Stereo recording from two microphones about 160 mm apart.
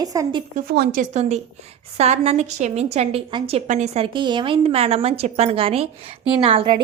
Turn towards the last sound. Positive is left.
turn(degrees=-30)  # may be behind; listen again after turning